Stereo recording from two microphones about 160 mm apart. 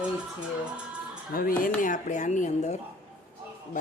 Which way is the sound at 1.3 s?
65° left (ahead or behind).